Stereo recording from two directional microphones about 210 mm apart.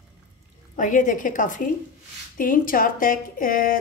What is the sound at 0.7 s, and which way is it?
Speech, 40° left (ahead or behind).